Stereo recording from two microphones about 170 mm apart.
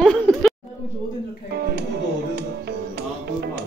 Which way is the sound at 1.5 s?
65° right (ahead or behind).